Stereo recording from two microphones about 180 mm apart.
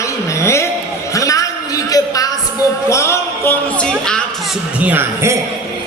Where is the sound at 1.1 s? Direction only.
20° left (ahead or behind).